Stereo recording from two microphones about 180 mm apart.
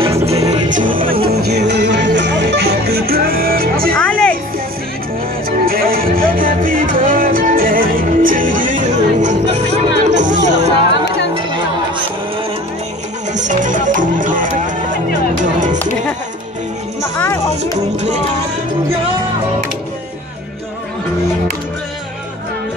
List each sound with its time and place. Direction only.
0.4 s music: 20° right (ahead or behind)
0.7 s music: 45° right (ahead or behind)
3.9 s music: 5° left (ahead or behind)
5.7 s music: 55° right (ahead or behind)
13.3 s music: 45° right (ahead or behind)
17.2 s music: 15° left (ahead or behind)